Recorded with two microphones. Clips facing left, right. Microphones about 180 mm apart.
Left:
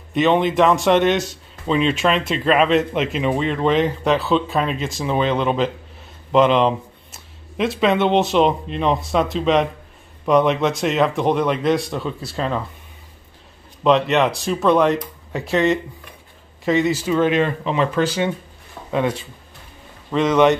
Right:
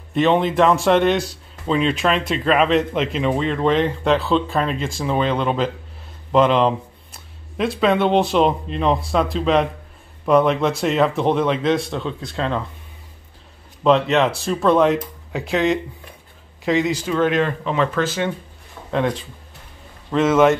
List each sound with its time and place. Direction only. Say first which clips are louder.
0.1 s speech: even; centre (ahead or behind)
13.8 s speech: even; centre (ahead or behind)